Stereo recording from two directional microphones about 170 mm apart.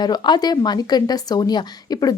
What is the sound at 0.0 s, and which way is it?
A woman's voice, 25° left (ahead or behind).